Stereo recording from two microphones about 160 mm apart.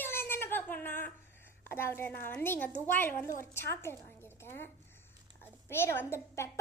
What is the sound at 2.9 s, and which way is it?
A woman's voice, 15° left (ahead or behind).